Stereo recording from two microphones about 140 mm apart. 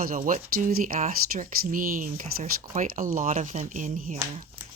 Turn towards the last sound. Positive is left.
turn(degrees=-65)  # may be behind; listen again after turning